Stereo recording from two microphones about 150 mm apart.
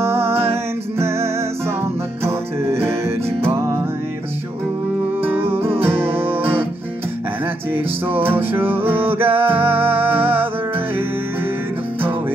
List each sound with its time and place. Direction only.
0.0 s music: 15° right (ahead or behind)
5.2 s music: 15° right (ahead or behind)
7.7 s music: 15° right (ahead or behind)